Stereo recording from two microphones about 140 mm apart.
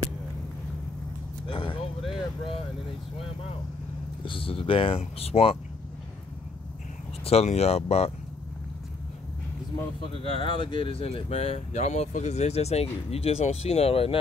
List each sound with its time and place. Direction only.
1.5 s speech: 35° left (ahead or behind)
4.2 s speech: 40° left (ahead or behind)
7.2 s speech: 50° left (ahead or behind)
10.1 s speech: 40° left (ahead or behind)